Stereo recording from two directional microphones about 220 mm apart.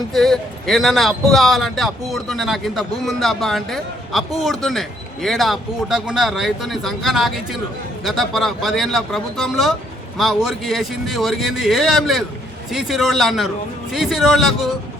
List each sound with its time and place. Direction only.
0.1 s speech: centre (ahead or behind)